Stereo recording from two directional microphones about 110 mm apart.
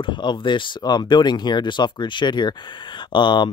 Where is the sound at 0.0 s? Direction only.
45° left (ahead or behind).